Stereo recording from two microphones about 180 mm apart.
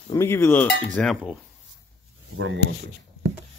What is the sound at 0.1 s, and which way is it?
Cowbell, 15° left (ahead or behind).